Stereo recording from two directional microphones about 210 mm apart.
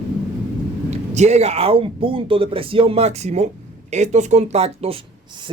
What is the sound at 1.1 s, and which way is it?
Speech, 30° right (ahead or behind).